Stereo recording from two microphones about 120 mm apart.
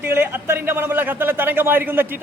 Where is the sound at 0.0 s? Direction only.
20° right (ahead or behind).